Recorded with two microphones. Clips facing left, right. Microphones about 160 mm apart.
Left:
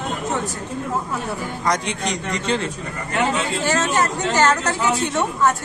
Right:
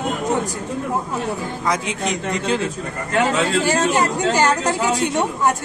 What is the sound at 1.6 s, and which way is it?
A man's voice, 5° right (ahead or behind).